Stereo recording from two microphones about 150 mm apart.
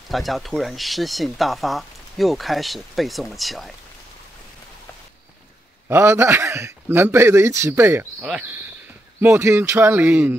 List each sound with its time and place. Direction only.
0.1 s speech: centre (ahead or behind)
5.9 s a man's voice: 15° right (ahead or behind)